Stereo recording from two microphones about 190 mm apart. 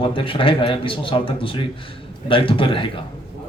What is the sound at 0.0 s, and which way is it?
A man's voice, 25° left (ahead or behind).